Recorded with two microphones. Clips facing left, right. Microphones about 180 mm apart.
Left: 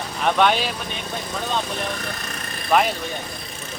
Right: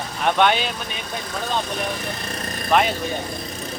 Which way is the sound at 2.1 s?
30° right (ahead or behind).